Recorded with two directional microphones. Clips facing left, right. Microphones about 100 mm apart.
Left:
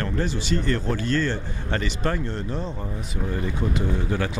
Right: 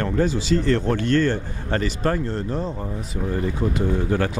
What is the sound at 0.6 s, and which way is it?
Speech, 75° right (ahead or behind).